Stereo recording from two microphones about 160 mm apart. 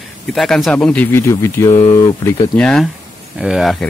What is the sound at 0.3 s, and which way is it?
Speech, centre (ahead or behind).